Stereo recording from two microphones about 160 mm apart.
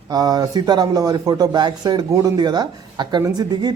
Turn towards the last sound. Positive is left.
turn(degrees=-25)  # may be behind; listen again after turning